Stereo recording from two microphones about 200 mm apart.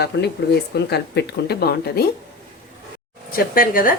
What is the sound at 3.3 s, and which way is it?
Speech, 45° left (ahead or behind).